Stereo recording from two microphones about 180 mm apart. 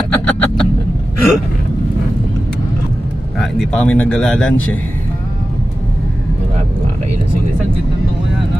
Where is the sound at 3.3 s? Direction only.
5° left (ahead or behind).